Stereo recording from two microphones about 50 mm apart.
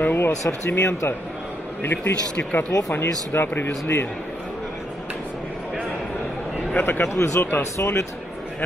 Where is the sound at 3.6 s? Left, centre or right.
Left.